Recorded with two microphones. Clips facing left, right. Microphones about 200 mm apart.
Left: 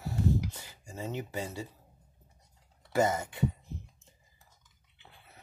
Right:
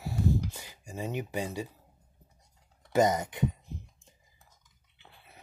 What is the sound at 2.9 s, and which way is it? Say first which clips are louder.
Speech: right 3 dB; 20° right (ahead or behind).